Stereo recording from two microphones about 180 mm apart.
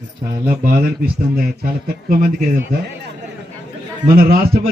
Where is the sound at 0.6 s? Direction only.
55° right (ahead or behind).